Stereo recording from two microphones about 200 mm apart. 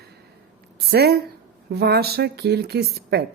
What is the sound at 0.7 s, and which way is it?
A woman's voice, 50° right (ahead or behind).